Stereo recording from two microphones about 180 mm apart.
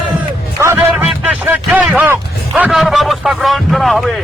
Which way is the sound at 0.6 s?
15° right (ahead or behind).